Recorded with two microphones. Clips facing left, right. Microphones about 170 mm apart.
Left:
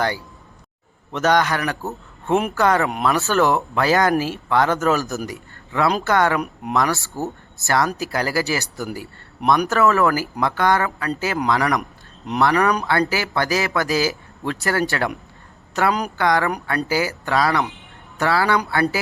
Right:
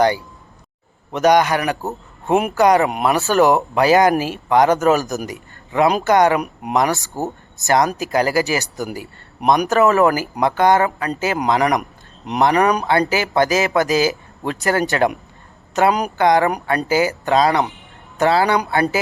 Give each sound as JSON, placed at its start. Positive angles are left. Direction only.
{"t": 1.1, "sound": "a man's voice", "side_deg": -15}